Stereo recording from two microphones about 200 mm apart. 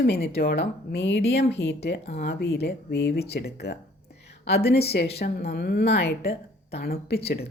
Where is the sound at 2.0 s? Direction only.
30° left (ahead or behind).